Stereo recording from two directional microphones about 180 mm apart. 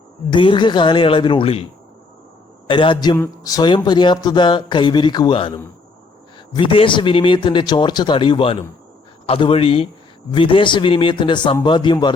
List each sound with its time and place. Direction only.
0.3 s speech: 25° left (ahead or behind)
2.6 s speech: 25° left (ahead or behind)